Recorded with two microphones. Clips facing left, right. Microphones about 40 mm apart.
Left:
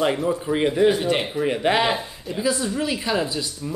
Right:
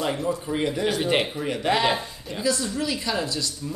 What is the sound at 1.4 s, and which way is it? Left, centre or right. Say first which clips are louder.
Speech: left 3 dB; left.